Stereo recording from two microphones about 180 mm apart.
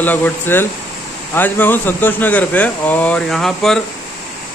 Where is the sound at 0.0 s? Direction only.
10° left (ahead or behind).